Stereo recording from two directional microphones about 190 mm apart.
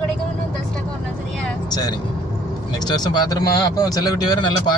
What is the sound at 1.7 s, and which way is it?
Speech, 20° left (ahead or behind).